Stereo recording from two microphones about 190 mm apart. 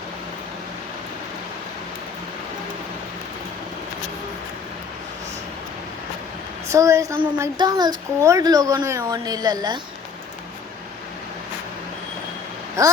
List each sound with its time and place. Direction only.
6.7 s a woman's voice: 15° right (ahead or behind)
12.8 s a woman's voice: 15° right (ahead or behind)